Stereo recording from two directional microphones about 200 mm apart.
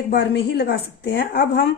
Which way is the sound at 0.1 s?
55° left (ahead or behind).